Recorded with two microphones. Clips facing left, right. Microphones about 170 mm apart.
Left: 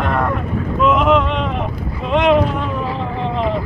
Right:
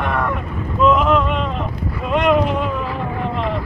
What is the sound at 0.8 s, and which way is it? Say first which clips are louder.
Boat: even; centre (ahead or behind).